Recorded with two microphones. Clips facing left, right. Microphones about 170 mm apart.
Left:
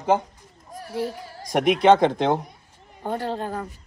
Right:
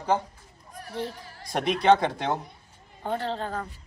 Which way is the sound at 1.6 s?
15° left (ahead or behind).